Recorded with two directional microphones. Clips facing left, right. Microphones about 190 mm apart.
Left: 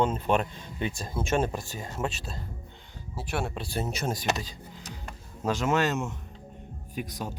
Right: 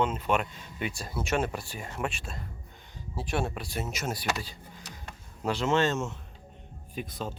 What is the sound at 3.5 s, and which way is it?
Speech, 30° left (ahead or behind).